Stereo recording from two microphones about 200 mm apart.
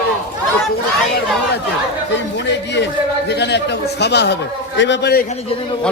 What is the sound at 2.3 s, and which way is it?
A man's voice, 60° left (ahead or behind).